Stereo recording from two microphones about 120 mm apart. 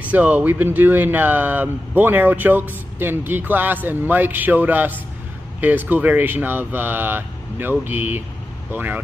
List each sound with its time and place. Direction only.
0.0 s speech: 15° right (ahead or behind)